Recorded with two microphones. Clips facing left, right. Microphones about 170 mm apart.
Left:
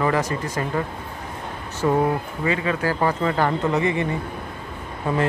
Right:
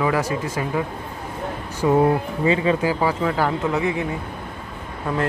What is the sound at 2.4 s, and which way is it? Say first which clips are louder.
Speech: right 4 dB; 25° right (ahead or behind).